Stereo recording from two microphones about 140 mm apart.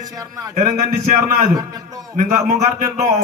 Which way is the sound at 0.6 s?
55° right (ahead or behind).